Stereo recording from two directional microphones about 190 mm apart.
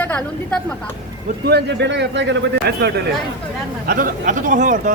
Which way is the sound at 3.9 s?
45° right (ahead or behind).